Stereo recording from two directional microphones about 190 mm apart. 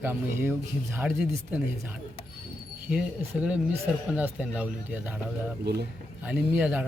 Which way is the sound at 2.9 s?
5° right (ahead or behind).